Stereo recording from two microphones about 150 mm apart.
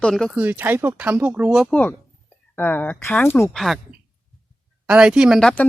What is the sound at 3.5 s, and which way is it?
Speech, centre (ahead or behind).